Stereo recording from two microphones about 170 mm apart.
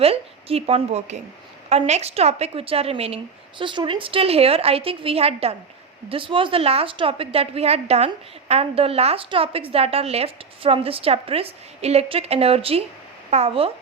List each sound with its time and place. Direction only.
0.0 s a woman's voice: 35° right (ahead or behind)